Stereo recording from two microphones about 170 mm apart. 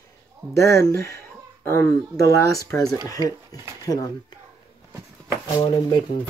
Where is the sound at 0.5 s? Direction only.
15° left (ahead or behind).